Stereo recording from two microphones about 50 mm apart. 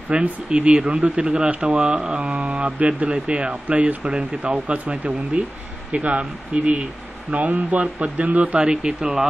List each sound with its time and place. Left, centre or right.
0.1 s speech: right